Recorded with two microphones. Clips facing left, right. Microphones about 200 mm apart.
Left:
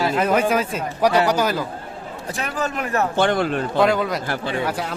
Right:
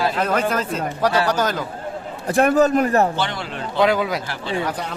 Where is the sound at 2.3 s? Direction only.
55° right (ahead or behind); by 3.0 s 35° right (ahead or behind).